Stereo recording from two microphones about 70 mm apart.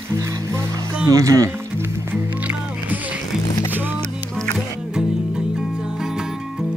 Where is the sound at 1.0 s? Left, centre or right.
Right.